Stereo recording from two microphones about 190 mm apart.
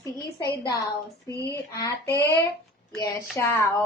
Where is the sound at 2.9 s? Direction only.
15° left (ahead or behind).